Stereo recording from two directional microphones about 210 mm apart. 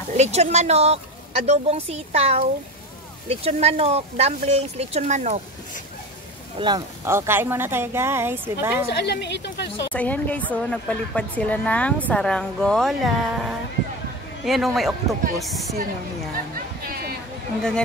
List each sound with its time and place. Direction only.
0.2 s a woman's voice: 30° right (ahead or behind)
6.6 s speech: 15° right (ahead or behind)
9.0 s speech: 55° left (ahead or behind)
9.9 s a woman's voice: 5° left (ahead or behind)
16.5 s a sound: 45° right (ahead or behind)
17.6 s a woman's voice: 5° left (ahead or behind)